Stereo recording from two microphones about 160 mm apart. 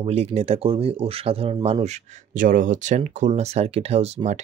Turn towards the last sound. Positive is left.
turn(degrees=-45)  # may be behind; listen again after turning